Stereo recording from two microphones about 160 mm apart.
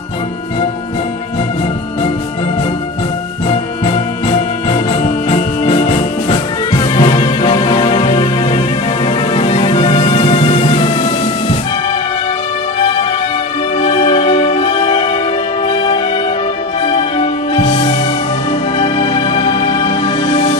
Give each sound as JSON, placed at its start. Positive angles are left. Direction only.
{"t": 3.4, "sound": "music", "side_deg": 35}
{"t": 13.7, "sound": "music", "side_deg": 35}
{"t": 16.8, "sound": "music", "side_deg": 40}